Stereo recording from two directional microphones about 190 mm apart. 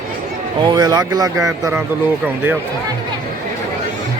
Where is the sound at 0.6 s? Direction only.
20° right (ahead or behind).